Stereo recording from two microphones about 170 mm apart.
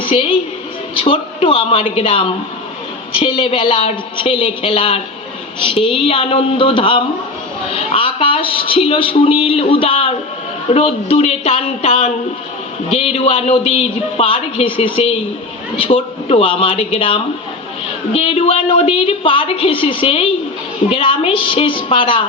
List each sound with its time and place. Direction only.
0.0 s a woman's voice: 30° left (ahead or behind)